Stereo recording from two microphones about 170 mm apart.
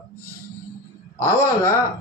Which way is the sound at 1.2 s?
15° left (ahead or behind).